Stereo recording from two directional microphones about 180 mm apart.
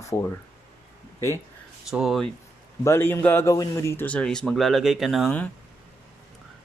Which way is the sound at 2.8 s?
15° left (ahead or behind).